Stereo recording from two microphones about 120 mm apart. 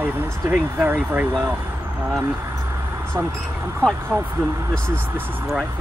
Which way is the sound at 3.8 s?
10° left (ahead or behind).